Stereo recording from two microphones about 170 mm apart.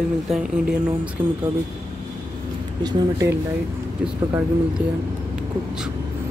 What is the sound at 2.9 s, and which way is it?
Speech, 20° right (ahead or behind).